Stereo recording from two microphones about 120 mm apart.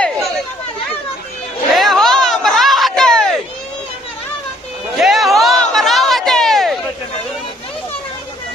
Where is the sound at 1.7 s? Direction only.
Centre (ahead or behind).